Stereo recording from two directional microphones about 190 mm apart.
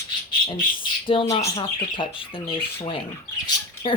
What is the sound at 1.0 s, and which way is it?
Speech, 30° left (ahead or behind).